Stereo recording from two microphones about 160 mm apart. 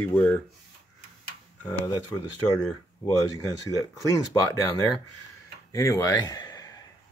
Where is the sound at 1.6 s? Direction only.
10° left (ahead or behind).